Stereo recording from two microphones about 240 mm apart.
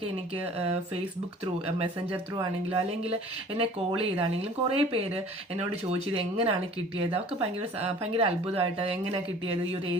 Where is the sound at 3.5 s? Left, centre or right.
Right.